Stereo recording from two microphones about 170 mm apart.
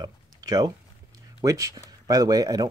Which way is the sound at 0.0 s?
20° right (ahead or behind).